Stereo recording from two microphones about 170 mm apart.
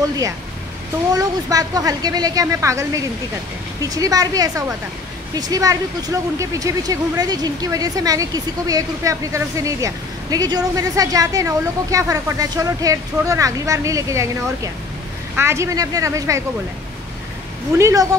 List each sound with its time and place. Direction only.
1.1 s speech: 20° right (ahead or behind)
17.7 s speech: 15° right (ahead or behind)